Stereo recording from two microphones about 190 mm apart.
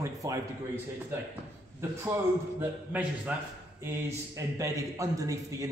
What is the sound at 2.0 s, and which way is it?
A man's voice, 15° right (ahead or behind).